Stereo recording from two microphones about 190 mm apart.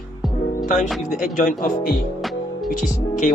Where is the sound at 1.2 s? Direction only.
45° left (ahead or behind).